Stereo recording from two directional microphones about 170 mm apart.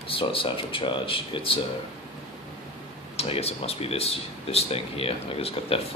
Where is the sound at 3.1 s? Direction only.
35° left (ahead or behind).